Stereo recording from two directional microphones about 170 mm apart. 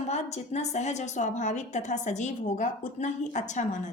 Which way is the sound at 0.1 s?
40° left (ahead or behind).